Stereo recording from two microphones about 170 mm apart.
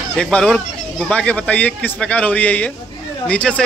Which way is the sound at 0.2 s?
5° left (ahead or behind).